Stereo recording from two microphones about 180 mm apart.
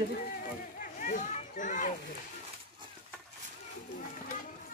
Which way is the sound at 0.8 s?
45° left (ahead or behind).